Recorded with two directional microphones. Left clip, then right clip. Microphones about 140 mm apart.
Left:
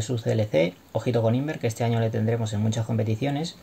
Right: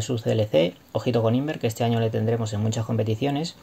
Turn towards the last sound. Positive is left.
turn(degrees=-25)  # may be behind; listen again after turning